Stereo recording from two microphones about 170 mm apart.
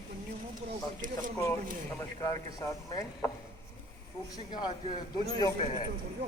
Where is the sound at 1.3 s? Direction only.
15° left (ahead or behind).